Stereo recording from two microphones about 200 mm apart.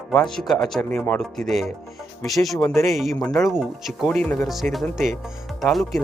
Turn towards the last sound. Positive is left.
turn(degrees=0)  # may be behind; listen again after turning